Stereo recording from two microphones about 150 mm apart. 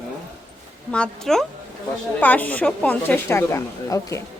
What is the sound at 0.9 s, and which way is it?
A woman's voice, 5° left (ahead or behind).